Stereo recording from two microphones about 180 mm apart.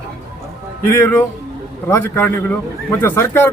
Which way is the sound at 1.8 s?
10° left (ahead or behind).